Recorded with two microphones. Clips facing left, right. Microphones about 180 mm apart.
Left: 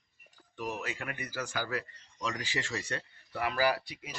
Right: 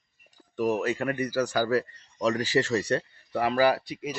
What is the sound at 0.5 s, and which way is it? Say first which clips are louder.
A man's voice: right 12 dB; 45° right (ahead or behind).